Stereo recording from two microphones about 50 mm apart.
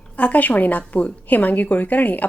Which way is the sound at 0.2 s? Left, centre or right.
Left.